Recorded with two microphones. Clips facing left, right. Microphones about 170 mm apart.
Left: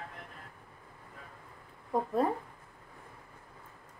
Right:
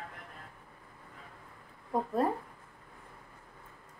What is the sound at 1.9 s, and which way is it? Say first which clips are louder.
Speech: left 1 dB; centre (ahead or behind).